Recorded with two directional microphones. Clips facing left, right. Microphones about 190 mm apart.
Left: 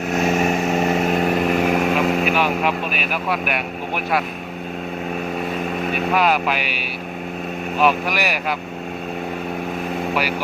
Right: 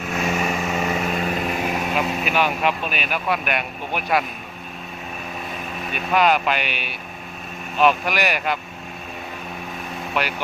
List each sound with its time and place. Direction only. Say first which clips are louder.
0.2 s vehicle: left 4 dB; 40° left (ahead or behind)
2.3 s speech: left 2 dB; centre (ahead or behind)
6.1 s speech: right 2 dB; 5° left (ahead or behind)